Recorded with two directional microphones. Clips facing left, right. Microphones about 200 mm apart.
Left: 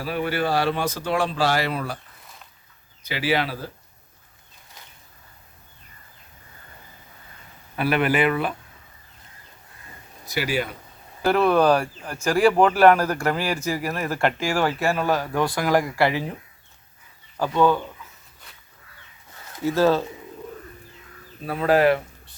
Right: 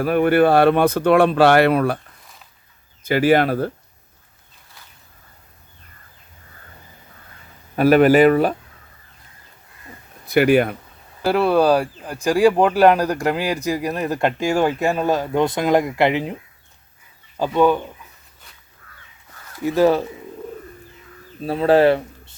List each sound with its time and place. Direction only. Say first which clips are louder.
0.0 s speech: right 10 dB; 55° right (ahead or behind)
3.0 s speech: right 9 dB; 50° right (ahead or behind)
7.8 s speech: right 9 dB; 40° right (ahead or behind)
10.2 s speech: right 11 dB; 60° right (ahead or behind)
11.3 s speech: right 2 dB; 10° right (ahead or behind)
19.6 s speech: right 3 dB; 15° right (ahead or behind)
21.4 s speech: right 4 dB; 30° right (ahead or behind)